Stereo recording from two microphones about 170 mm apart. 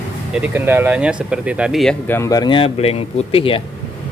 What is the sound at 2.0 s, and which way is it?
Speech, 15° left (ahead or behind).